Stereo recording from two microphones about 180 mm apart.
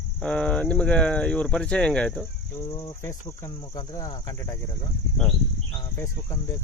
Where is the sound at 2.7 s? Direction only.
20° left (ahead or behind).